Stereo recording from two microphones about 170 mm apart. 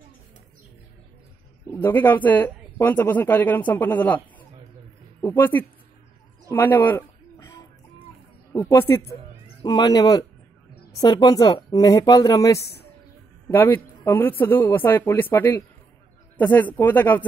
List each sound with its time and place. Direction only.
1.7 s speech: 10° left (ahead or behind)
6.5 s a sound: 10° left (ahead or behind)
8.5 s a man's voice: 15° left (ahead or behind)